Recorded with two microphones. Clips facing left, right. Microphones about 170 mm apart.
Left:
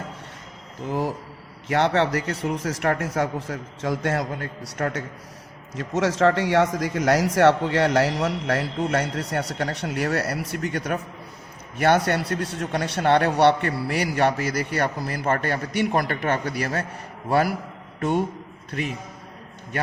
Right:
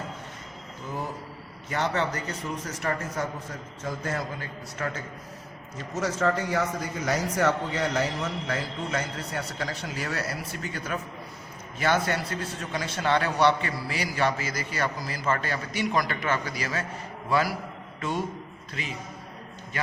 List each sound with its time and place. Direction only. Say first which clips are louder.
0.9 s a man's voice: left 8 dB; 75° left (ahead or behind)
5.7 s a man's voice: left 6 dB; 90° left; by 19.9 s 60° left (ahead or behind)